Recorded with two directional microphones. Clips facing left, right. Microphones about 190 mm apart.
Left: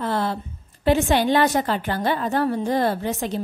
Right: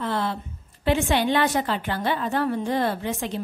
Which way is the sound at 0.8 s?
40° left (ahead or behind).